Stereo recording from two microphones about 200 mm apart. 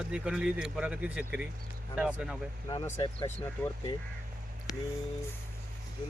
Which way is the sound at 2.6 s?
15° left (ahead or behind).